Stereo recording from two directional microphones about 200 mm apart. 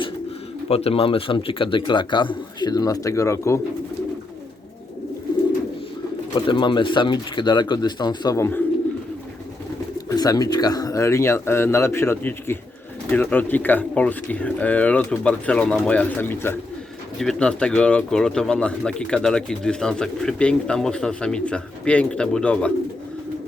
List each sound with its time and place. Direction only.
0.7 s speech: 30° left (ahead or behind); by 3.6 s 15° left (ahead or behind)
6.5 s speech: 25° left (ahead or behind)
10.1 s speech: 20° left (ahead or behind)